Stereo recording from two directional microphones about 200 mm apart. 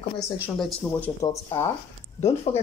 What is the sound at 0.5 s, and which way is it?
Speech, 5° left (ahead or behind).